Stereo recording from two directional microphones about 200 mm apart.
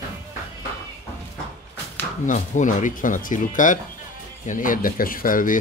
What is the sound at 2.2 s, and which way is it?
Speech, 40° left (ahead or behind).